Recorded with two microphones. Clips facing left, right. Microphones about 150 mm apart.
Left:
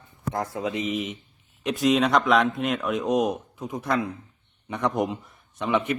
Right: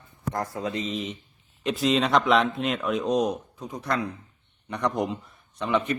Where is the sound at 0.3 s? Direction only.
20° left (ahead or behind).